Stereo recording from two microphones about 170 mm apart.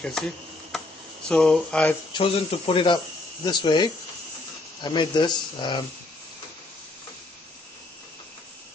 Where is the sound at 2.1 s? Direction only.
30° left (ahead or behind).